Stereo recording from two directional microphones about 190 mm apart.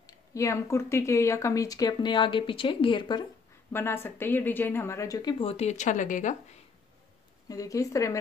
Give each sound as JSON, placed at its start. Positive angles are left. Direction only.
{"t": 0.0, "sound": "speech", "side_deg": 15}
{"t": 3.7, "sound": "speech", "side_deg": 10}
{"t": 7.4, "sound": "speech", "side_deg": 15}